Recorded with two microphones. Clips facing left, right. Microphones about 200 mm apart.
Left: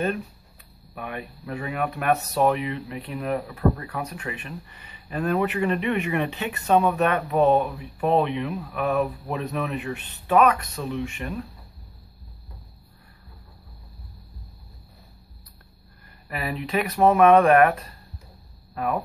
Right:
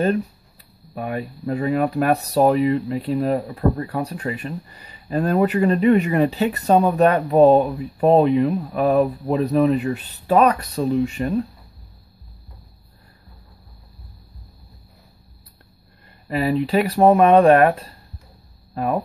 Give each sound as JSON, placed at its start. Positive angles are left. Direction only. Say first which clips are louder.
{"t": 0.9, "sound": "speech", "louder": "right 7 dB", "side_deg": -35}
{"t": 16.3, "sound": "speech", "louder": "right 10 dB", "side_deg": -30}